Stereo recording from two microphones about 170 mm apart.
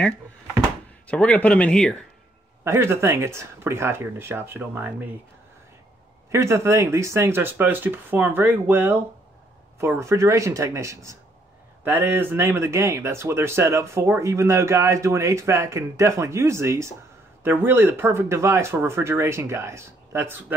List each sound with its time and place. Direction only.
1.0 s speech: 10° left (ahead or behind)
2.6 s speech: 15° right (ahead or behind)
6.3 s speech: 15° right (ahead or behind)